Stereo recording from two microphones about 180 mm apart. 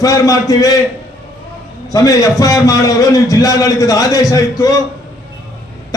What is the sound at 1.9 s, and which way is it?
A man's voice, 20° left (ahead or behind).